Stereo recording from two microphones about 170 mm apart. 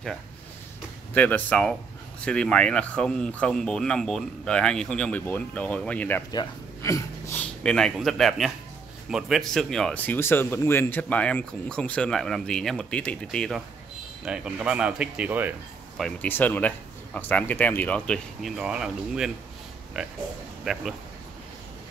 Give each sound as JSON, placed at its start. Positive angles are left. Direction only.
{"t": 1.1, "sound": "speech", "side_deg": 10}
{"t": 7.6, "sound": "speech", "side_deg": 5}
{"t": 16.0, "sound": "speech", "side_deg": 5}